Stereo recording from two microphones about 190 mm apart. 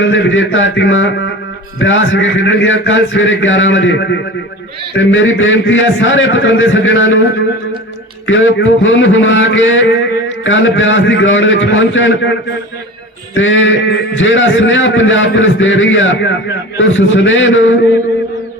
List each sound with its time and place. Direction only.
0.0 s a man's voice: 80° left
4.9 s a man's voice: 90° left
13.3 s a man's voice: 90° left